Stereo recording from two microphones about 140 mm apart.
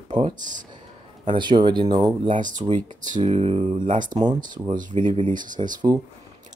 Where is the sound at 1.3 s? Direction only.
35° right (ahead or behind).